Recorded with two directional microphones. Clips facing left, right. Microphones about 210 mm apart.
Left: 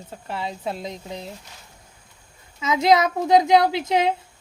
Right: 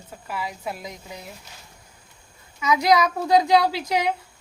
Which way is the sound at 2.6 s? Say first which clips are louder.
Left 1 dB; 25° left (ahead or behind).